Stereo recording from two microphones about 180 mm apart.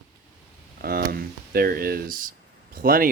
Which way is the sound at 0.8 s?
60° right (ahead or behind).